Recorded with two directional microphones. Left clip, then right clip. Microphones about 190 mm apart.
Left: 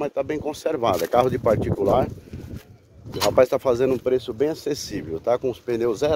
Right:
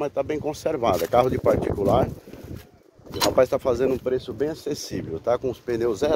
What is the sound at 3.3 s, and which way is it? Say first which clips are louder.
Speech: left 3 dB; 15° left (ahead or behind).